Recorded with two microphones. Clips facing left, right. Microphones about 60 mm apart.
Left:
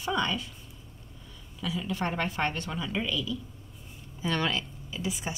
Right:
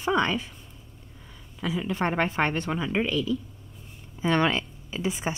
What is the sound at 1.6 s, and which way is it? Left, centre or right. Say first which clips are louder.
Speech: right 4 dB; right.